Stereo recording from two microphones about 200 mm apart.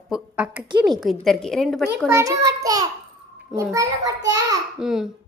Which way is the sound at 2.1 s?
15° right (ahead or behind).